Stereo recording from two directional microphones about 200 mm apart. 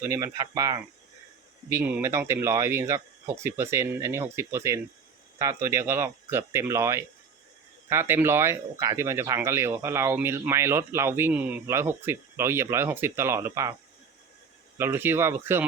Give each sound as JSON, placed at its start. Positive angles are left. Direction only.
{"t": 0.0, "sound": "speech", "side_deg": -15}
{"t": 14.8, "sound": "speech", "side_deg": -10}